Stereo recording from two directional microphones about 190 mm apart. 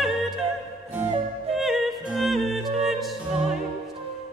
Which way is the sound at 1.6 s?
Centre (ahead or behind).